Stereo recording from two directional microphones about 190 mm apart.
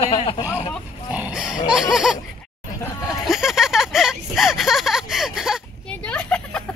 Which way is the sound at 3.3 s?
Centre (ahead or behind).